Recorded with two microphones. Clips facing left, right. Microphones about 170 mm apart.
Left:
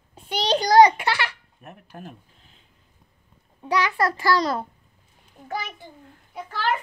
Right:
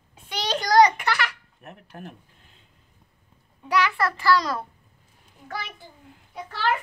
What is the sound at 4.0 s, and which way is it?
Speech, 30° left (ahead or behind).